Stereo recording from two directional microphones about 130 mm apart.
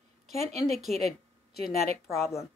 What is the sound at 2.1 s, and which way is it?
Speech, 20° left (ahead or behind).